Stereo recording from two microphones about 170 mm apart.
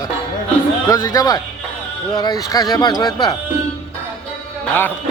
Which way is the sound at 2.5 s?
20° left (ahead or behind).